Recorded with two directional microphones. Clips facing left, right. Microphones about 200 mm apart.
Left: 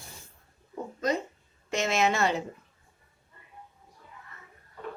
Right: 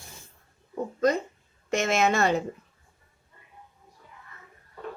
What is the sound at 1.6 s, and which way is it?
Speech, 50° right (ahead or behind).